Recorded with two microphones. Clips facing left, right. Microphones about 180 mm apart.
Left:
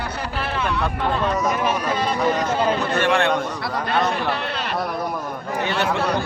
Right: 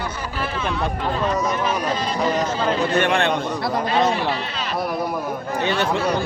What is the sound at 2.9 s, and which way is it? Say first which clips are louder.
Speech: left 2 dB; 20° right (ahead or behind).